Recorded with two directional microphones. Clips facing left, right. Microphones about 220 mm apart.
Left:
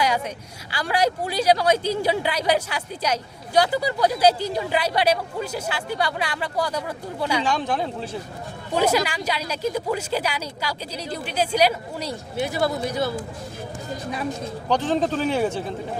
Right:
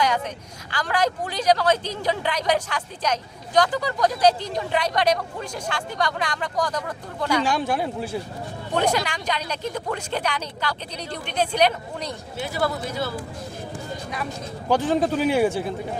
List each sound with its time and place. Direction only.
0.7 s speech: 10° left (ahead or behind)
7.4 s a man's voice: 10° right (ahead or behind)
8.7 s speech: 5° left (ahead or behind)
12.4 s speech: 20° left (ahead or behind)
14.7 s a man's voice: 10° right (ahead or behind)